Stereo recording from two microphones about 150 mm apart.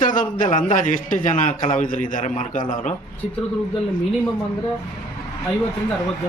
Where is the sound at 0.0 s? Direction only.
60° left (ahead or behind).